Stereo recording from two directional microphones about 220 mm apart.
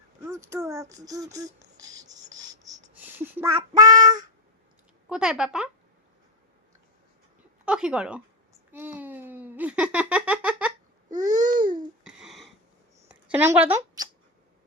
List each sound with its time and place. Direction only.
0.3 s speech: 15° right (ahead or behind)
5.0 s speech: 5° right (ahead or behind)
7.6 s speech: 5° right (ahead or behind)
11.3 s babbling: 35° right (ahead or behind)
12.0 s a sound: centre (ahead or behind)